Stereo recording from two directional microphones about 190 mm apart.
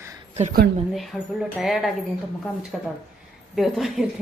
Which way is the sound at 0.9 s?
Centre (ahead or behind).